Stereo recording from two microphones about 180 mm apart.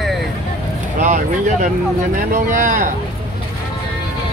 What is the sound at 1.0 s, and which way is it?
Speech, 45° right (ahead or behind).